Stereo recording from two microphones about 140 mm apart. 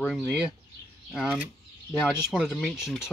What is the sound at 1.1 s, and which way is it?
Speech, centre (ahead or behind).